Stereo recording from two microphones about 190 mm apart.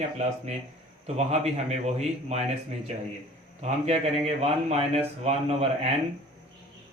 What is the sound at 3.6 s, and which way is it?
A man's voice, 35° right (ahead or behind).